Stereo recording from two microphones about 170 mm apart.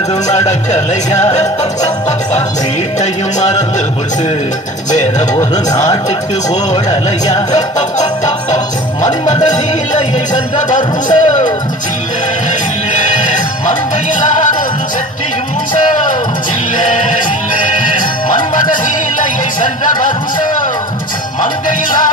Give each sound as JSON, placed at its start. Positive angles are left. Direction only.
{"t": 3.0, "sound": "music", "side_deg": 45}
{"t": 5.3, "sound": "speech", "side_deg": 20}
{"t": 6.5, "sound": "speech", "side_deg": 40}
{"t": 9.0, "sound": "music", "side_deg": 45}
{"t": 10.8, "sound": "music", "side_deg": 45}